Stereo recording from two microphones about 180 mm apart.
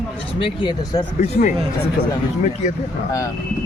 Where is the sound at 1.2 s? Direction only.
50° left (ahead or behind).